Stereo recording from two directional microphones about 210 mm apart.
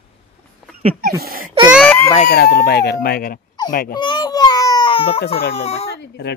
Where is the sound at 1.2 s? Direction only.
45° right (ahead or behind).